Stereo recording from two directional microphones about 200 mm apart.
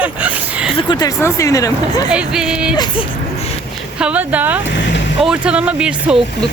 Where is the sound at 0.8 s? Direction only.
20° left (ahead or behind).